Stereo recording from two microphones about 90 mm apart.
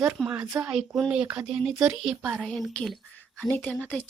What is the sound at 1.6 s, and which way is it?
Speech, 5° right (ahead or behind).